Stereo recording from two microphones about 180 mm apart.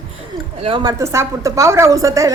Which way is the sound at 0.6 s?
25° right (ahead or behind).